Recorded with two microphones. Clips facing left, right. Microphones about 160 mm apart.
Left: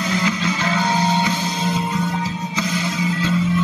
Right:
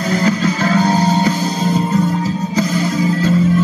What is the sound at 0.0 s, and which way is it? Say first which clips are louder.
Music: right 6 dB; 40° right (ahead or behind).